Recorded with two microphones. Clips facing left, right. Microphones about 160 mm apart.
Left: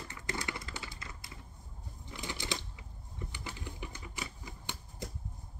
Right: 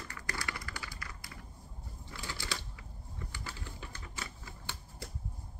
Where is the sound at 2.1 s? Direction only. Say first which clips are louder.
Left 3 dB; 20° left (ahead or behind).